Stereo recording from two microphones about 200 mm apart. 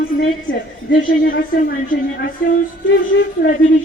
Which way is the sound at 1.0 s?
45° left (ahead or behind).